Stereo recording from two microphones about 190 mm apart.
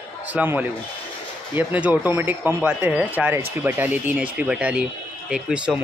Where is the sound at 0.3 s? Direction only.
10° right (ahead or behind).